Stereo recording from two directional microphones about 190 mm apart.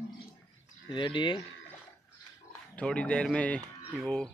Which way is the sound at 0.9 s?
25° left (ahead or behind).